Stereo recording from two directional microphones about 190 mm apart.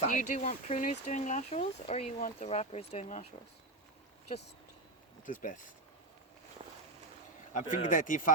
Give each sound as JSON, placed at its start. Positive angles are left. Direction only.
{"t": 0.0, "sound": "speech", "side_deg": 40}
{"t": 5.2, "sound": "speech", "side_deg": 45}
{"t": 7.5, "sound": "speech", "side_deg": 45}